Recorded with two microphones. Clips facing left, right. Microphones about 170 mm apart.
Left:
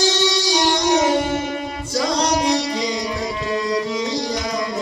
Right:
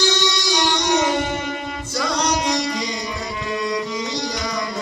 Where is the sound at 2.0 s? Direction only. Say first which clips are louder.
Left 2 dB; 35° left (ahead or behind).